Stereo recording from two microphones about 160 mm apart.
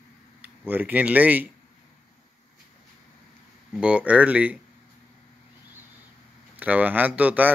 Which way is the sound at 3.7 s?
5° right (ahead or behind).